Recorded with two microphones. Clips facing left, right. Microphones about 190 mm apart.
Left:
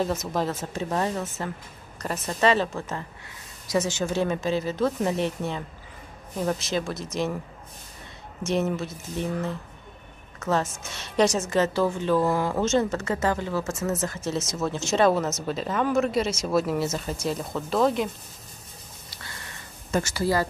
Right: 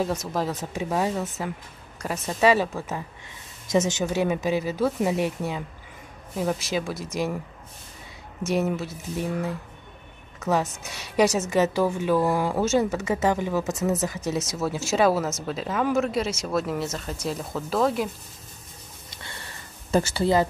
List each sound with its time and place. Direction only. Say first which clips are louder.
0.3 s a woman's voice: even; centre (ahead or behind)
4.1 s a woman's voice: even; 10° right (ahead or behind)
8.5 s a woman's voice: right 1 dB; 5° right (ahead or behind)
10.5 s a woman's voice: right 1 dB; 10° right (ahead or behind)
19.9 s speech: right 3 dB; 30° right (ahead or behind)